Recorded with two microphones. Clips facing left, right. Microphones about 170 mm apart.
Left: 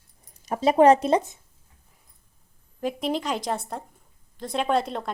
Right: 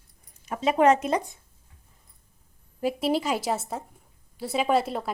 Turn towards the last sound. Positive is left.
turn(degrees=-5)  # may be behind; listen again after turning